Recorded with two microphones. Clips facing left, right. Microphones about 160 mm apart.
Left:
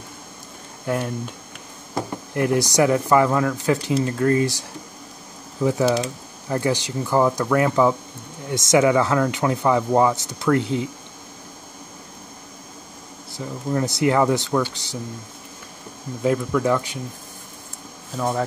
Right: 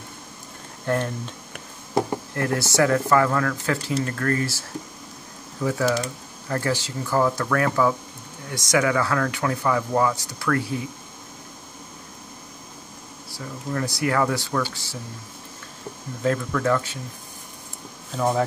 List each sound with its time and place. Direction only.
0.8 s speech: 10° left (ahead or behind)
2.3 s speech: 15° left (ahead or behind)
13.3 s speech: 20° left (ahead or behind)
16.2 s speech: 15° left (ahead or behind)
18.1 s speech: centre (ahead or behind)